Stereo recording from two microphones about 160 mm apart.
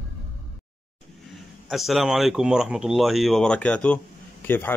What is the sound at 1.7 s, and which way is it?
Speech, centre (ahead or behind).